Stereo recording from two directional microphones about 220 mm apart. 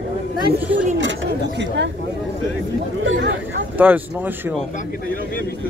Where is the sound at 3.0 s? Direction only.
60° right (ahead or behind).